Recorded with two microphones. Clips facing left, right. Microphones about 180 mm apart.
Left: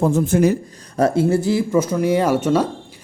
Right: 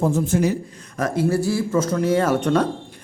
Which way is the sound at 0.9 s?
30° left (ahead or behind).